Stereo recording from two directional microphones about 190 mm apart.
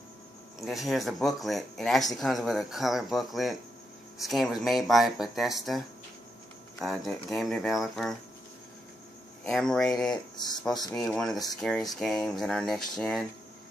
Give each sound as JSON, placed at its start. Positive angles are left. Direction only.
{"t": 0.6, "sound": "speech", "side_deg": 0}
{"t": 6.8, "sound": "speech", "side_deg": 0}
{"t": 9.4, "sound": "speech", "side_deg": 5}
{"t": 10.1, "sound": "speech", "side_deg": 20}
{"t": 10.6, "sound": "speech", "side_deg": 0}